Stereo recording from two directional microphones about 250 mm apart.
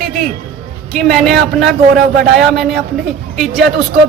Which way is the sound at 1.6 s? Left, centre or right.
Right.